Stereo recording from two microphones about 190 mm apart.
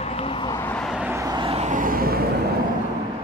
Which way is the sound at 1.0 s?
15° right (ahead or behind).